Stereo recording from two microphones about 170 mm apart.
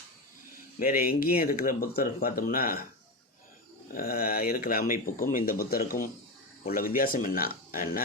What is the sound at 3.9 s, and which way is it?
Speech, 60° left (ahead or behind).